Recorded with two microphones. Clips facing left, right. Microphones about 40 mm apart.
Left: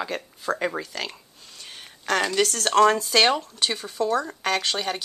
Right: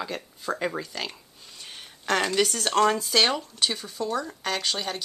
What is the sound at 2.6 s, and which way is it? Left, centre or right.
Speech, centre.